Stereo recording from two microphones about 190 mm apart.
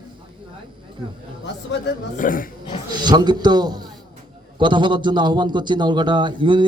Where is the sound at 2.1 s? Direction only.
45° left (ahead or behind).